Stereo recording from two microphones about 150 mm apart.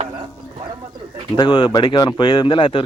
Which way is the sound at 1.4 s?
30° left (ahead or behind).